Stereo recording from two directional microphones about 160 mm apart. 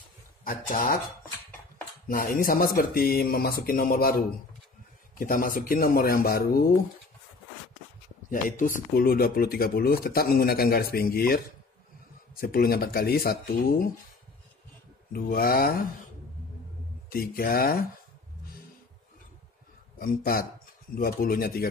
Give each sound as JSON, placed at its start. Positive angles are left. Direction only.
{"t": 0.4, "sound": "speech", "side_deg": 60}
{"t": 2.0, "sound": "speech", "side_deg": 60}
{"t": 5.2, "sound": "speech", "side_deg": 60}
{"t": 8.3, "sound": "speech", "side_deg": 55}
{"t": 15.1, "sound": "speech", "side_deg": 65}
{"t": 17.1, "sound": "speech", "side_deg": 65}
{"t": 20.0, "sound": "speech", "side_deg": 65}